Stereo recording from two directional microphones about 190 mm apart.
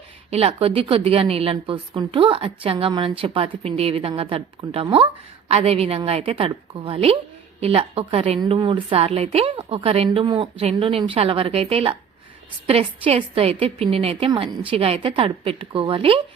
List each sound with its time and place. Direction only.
0.3 s a woman's voice: 30° right (ahead or behind)